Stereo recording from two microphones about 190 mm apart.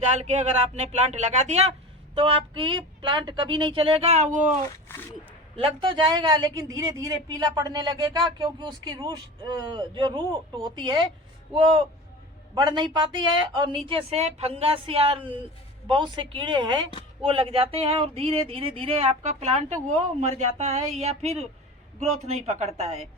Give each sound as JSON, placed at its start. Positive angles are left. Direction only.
{"t": 0.0, "sound": "a woman's voice", "side_deg": -35}
{"t": 4.9, "sound": "speech", "side_deg": 10}
{"t": 5.5, "sound": "a woman's voice", "side_deg": -25}